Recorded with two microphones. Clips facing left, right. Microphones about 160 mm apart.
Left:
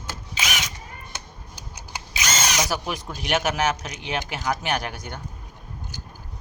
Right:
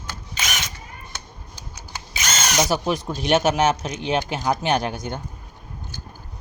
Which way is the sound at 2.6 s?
25° right (ahead or behind).